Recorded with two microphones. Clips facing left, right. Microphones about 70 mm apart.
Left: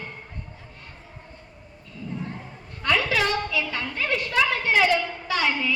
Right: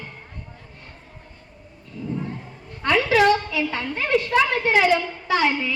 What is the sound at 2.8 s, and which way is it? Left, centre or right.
A child's voice, right.